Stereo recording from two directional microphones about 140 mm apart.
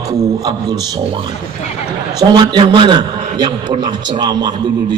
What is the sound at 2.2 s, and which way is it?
A man's voice, 30° right (ahead or behind).